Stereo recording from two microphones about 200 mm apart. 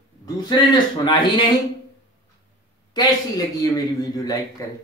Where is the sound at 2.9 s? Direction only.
20° left (ahead or behind).